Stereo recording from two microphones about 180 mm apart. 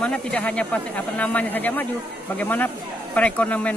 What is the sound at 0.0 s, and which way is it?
Speech, 5° left (ahead or behind).